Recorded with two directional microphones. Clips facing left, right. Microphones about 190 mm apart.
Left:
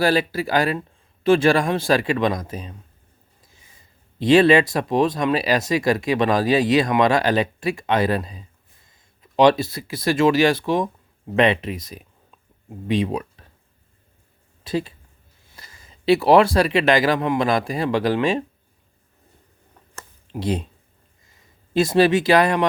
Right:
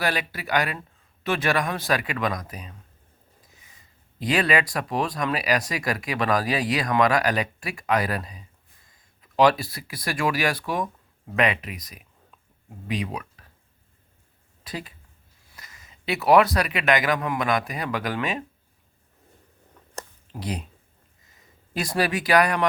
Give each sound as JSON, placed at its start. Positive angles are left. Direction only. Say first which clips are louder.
{"t": 0.0, "sound": "speech", "louder": "left 8 dB", "side_deg": 30}
{"t": 4.2, "sound": "speech", "louder": "left 9 dB", "side_deg": 25}
{"t": 14.6, "sound": "a woman's voice", "louder": "left 11 dB", "side_deg": 25}
{"t": 20.3, "sound": "speech", "louder": "left 8 dB", "side_deg": 25}
{"t": 21.7, "sound": "speech", "louder": "left 9 dB", "side_deg": 25}